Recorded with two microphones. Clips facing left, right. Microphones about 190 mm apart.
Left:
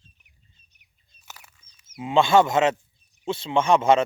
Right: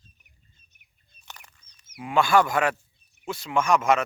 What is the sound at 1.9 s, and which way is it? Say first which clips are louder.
Speech: left 3 dB; 25° left (ahead or behind).